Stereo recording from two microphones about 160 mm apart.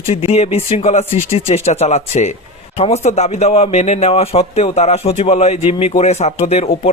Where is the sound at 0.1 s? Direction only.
40° left (ahead or behind).